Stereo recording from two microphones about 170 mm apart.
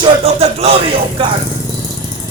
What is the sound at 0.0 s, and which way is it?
A man's voice, 35° right (ahead or behind).